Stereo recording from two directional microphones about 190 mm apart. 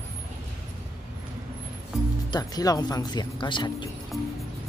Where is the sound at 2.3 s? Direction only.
20° left (ahead or behind).